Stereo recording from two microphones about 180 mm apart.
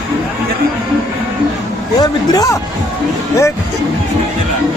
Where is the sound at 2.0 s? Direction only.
20° left (ahead or behind).